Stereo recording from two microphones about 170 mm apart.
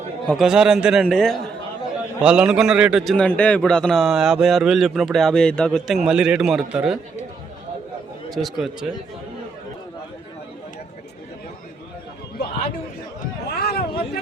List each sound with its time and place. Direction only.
0.3 s a man's voice: centre (ahead or behind)
8.3 s a man's voice: centre (ahead or behind)
13.5 s a sound: 65° left (ahead or behind)